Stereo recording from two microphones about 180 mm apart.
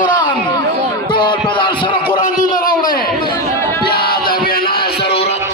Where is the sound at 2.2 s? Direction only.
45° left (ahead or behind).